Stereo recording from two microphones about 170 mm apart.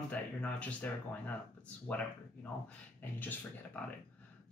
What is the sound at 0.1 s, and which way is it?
A man's voice, 5° left (ahead or behind).